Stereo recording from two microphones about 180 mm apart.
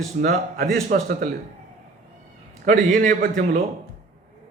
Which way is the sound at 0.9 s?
70° right (ahead or behind).